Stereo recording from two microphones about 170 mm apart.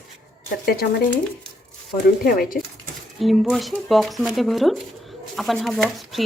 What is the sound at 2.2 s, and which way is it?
Speech, 60° left (ahead or behind).